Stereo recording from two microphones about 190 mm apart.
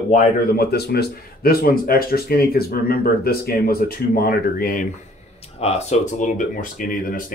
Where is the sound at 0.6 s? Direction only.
55° left (ahead or behind).